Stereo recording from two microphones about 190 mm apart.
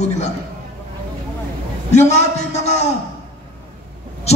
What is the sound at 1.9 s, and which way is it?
Speech, 35° left (ahead or behind).